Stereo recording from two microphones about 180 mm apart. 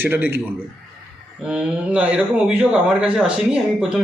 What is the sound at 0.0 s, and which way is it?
Speech, 10° right (ahead or behind).